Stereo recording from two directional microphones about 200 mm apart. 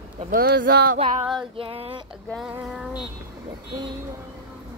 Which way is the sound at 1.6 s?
30° right (ahead or behind).